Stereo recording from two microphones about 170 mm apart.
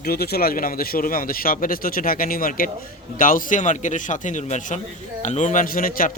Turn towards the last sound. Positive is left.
turn(degrees=55)  # may be behind; listen again after turning